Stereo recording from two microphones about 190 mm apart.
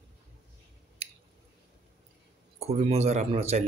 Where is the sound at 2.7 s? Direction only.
30° right (ahead or behind).